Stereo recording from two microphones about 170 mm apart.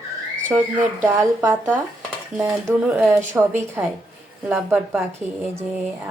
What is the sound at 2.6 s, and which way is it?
A woman's voice, 5° right (ahead or behind).